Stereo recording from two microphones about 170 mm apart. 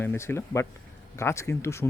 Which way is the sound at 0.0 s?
15° left (ahead or behind).